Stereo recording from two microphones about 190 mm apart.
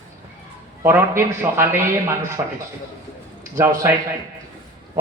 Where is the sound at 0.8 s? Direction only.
10° right (ahead or behind).